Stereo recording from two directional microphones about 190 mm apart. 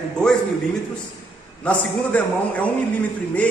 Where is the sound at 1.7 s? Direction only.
5° left (ahead or behind).